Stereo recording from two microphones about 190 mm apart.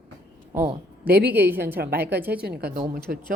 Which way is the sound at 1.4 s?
10° right (ahead or behind).